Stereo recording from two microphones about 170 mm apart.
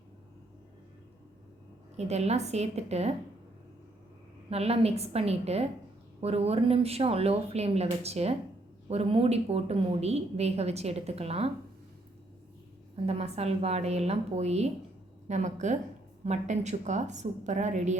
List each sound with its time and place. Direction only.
2.0 s a woman's voice: 40° right (ahead or behind)
4.4 s a woman's voice: 35° right (ahead or behind)
13.1 s a woman's voice: 40° right (ahead or behind)